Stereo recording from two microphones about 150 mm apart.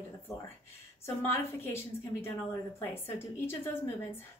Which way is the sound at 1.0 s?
15° left (ahead or behind).